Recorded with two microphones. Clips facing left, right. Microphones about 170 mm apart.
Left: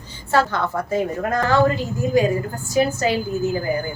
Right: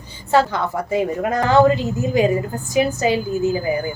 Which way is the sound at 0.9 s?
15° right (ahead or behind).